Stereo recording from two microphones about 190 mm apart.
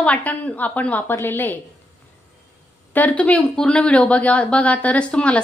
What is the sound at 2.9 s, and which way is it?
Speech, 10° left (ahead or behind).